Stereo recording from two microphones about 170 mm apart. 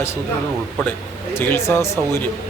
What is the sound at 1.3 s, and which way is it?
Speech, 15° left (ahead or behind).